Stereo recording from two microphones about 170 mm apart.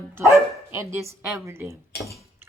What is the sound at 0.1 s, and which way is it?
Speech, 15° right (ahead or behind).